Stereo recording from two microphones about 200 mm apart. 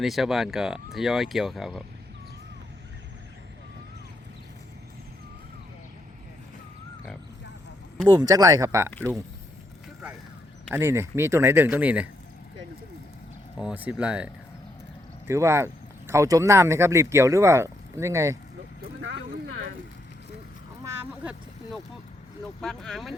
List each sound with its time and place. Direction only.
0.0 s speech: centre (ahead or behind)
8.0 s speech: 15° right (ahead or behind)
10.7 s speech: 10° right (ahead or behind)
13.6 s speech: 5° right (ahead or behind)
15.3 s speech: 15° right (ahead or behind)
20.8 s vehicle: 5° right (ahead or behind)
22.6 s speech: centre (ahead or behind)